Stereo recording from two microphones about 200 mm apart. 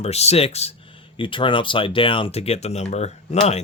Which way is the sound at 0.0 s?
30° left (ahead or behind).